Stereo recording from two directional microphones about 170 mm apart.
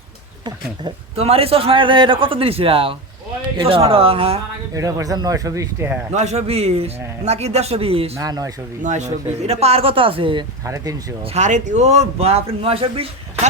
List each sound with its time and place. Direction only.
0.4 s a man's voice: 30° right (ahead or behind)
4.7 s speech: 20° right (ahead or behind)
6.1 s a man's voice: 40° right (ahead or behind)
8.2 s speech: 20° right (ahead or behind)
8.8 s a man's voice: 45° right (ahead or behind)
11.3 s a man's voice: 45° right (ahead or behind)